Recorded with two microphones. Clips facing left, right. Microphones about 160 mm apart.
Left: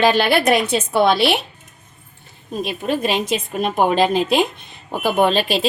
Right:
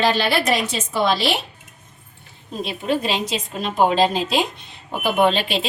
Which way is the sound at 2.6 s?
45° left (ahead or behind).